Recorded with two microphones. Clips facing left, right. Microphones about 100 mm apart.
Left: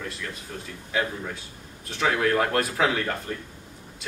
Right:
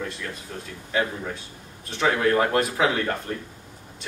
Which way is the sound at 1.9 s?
Centre (ahead or behind).